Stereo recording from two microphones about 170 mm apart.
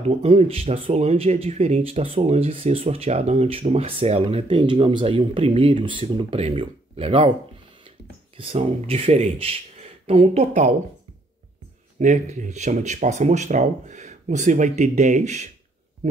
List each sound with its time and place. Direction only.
0.2 s speech: 35° right (ahead or behind)
8.4 s speech: 35° right (ahead or behind)
12.0 s speech: 45° right (ahead or behind)